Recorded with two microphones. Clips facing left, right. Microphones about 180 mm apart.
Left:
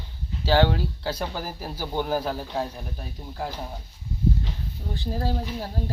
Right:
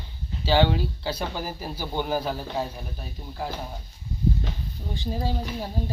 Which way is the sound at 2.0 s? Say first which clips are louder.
Even; 5° right (ahead or behind).